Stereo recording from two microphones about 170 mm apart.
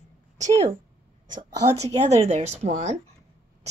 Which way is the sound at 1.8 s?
40° right (ahead or behind).